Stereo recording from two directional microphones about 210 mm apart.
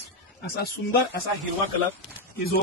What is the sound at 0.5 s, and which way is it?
Speech, 50° left (ahead or behind).